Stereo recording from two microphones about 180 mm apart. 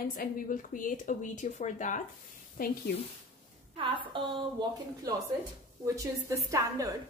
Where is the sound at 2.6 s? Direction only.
55° left (ahead or behind).